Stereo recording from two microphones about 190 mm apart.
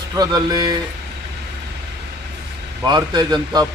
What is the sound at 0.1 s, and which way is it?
Speech, 20° right (ahead or behind).